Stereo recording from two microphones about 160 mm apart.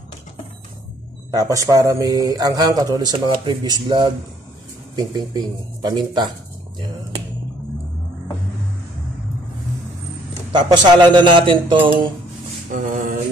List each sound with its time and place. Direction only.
1.3 s a man's voice: 20° right (ahead or behind)
10.5 s a man's voice: 25° right (ahead or behind)
11.1 s a sound: 30° right (ahead or behind)
12.7 s music: 55° right (ahead or behind)